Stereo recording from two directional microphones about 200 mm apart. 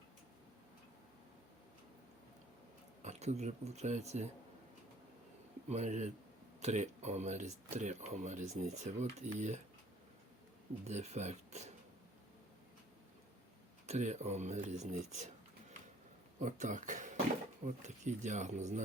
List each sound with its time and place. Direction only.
3.0 s speech: 35° right (ahead or behind)
5.6 s speech: 35° right (ahead or behind)
10.8 s speech: 35° right (ahead or behind)
13.8 s speech: 35° right (ahead or behind)
16.4 s speech: 40° right (ahead or behind)